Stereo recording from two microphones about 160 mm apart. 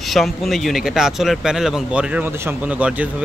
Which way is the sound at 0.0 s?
Centre (ahead or behind).